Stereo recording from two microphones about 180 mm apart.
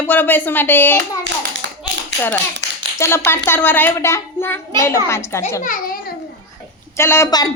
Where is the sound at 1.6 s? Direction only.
80° right.